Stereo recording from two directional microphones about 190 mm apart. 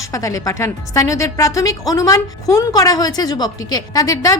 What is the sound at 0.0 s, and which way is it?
A woman's voice, 15° left (ahead or behind).